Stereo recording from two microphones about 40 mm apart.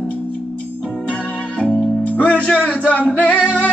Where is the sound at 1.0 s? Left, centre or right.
Left.